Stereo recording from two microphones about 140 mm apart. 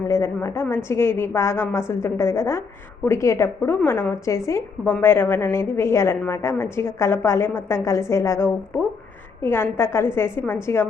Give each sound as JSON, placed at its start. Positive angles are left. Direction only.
{"t": 0.1, "sound": "a woman's voice", "side_deg": 20}